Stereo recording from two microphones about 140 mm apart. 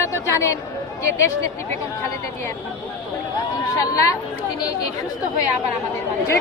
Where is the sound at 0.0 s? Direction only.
20° left (ahead or behind).